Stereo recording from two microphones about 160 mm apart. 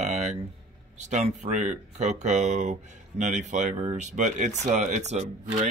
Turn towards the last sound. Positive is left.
turn(degrees=-50)  # may be behind; listen again after turning